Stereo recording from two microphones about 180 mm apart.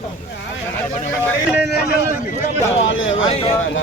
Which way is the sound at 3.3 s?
35° left (ahead or behind).